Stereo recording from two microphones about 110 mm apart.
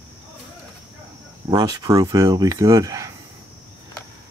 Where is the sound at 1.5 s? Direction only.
35° right (ahead or behind).